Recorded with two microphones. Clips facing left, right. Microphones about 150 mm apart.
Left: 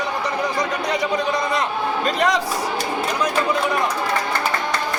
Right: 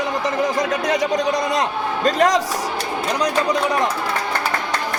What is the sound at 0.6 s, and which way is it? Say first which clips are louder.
A man's voice: right 3 dB; 45° right (ahead or behind).